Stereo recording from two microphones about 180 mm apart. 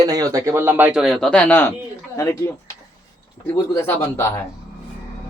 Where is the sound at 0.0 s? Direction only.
20° right (ahead or behind); by 1.7 s 10° left (ahead or behind).